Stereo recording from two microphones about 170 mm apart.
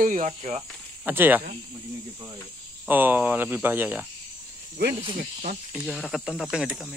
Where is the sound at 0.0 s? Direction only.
50° right (ahead or behind).